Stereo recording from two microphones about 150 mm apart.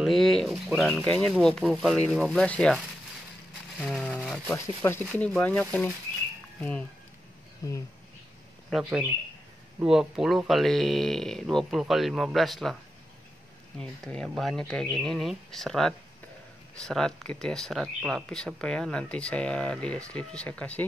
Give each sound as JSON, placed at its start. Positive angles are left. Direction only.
{"t": 0.0, "sound": "speech", "side_deg": 0}
{"t": 3.8, "sound": "a sound", "side_deg": 5}
{"t": 4.8, "sound": "speech", "side_deg": 15}
{"t": 7.6, "sound": "speech", "side_deg": 25}
{"t": 8.6, "sound": "speech", "side_deg": 0}
{"t": 13.7, "sound": "speech", "side_deg": 5}